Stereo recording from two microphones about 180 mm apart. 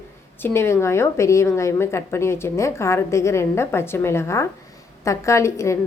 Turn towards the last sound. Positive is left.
turn(degrees=15)  # may be behind; listen again after turning